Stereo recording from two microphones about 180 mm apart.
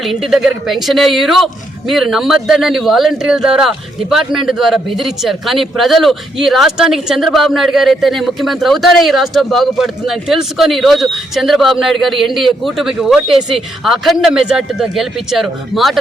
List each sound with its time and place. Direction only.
0.0 s speech: centre (ahead or behind)